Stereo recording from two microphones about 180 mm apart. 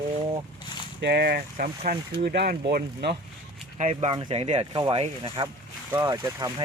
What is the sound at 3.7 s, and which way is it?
Speech, 40° right (ahead or behind).